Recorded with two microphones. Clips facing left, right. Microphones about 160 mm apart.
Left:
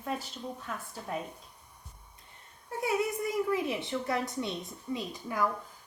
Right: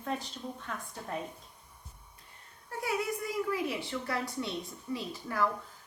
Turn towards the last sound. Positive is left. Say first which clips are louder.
# even
turn(degrees=15)  # may be behind; listen again after turning